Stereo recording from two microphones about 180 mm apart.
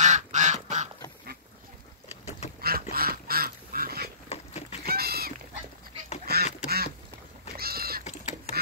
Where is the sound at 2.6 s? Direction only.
55° right (ahead or behind).